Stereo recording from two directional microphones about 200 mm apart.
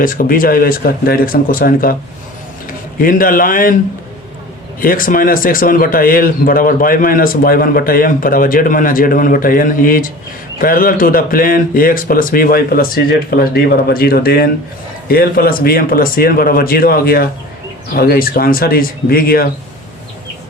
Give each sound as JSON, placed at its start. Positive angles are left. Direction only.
{"t": 0.0, "sound": "a man's voice", "side_deg": 45}
{"t": 4.8, "sound": "a man's voice", "side_deg": 45}